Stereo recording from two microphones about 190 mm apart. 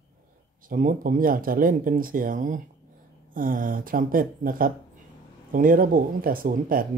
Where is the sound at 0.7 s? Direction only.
45° right (ahead or behind).